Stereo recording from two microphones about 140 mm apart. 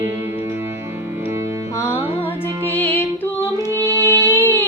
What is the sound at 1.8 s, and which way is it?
Music, 20° left (ahead or behind).